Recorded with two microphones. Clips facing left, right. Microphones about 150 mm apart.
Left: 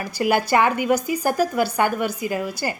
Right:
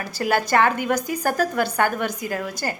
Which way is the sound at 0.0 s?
15° left (ahead or behind).